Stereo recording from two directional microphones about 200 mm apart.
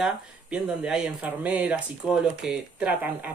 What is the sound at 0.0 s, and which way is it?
Speech, 5° right (ahead or behind).